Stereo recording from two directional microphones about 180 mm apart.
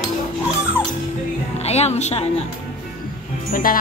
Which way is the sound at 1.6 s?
35° left (ahead or behind).